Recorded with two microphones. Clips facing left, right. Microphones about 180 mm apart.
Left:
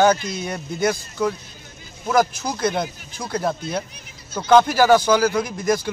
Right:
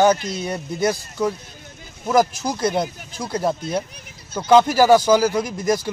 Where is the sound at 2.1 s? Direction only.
40° right (ahead or behind).